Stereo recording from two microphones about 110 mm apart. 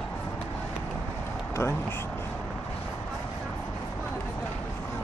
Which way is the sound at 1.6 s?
20° left (ahead or behind).